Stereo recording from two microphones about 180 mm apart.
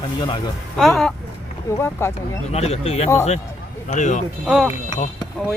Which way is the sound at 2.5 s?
35° left (ahead or behind).